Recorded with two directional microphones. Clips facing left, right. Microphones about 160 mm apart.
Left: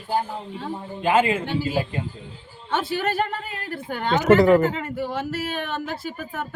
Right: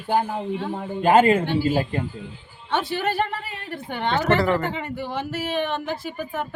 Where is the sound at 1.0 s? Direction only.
40° right (ahead or behind).